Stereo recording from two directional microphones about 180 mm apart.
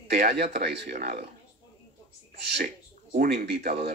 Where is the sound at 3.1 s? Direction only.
60° right (ahead or behind).